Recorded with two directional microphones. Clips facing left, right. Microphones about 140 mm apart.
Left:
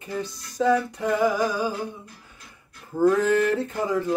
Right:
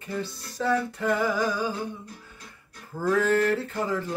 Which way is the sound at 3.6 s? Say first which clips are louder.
Left 3 dB; 15° left (ahead or behind).